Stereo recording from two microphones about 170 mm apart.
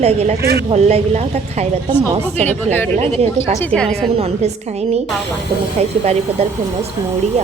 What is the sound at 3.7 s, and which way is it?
Speech, 5° left (ahead or behind).